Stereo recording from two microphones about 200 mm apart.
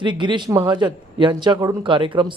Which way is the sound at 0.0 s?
25° right (ahead or behind).